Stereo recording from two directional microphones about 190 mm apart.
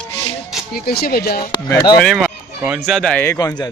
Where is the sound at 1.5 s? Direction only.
25° left (ahead or behind).